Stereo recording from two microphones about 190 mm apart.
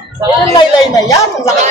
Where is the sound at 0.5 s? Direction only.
20° left (ahead or behind).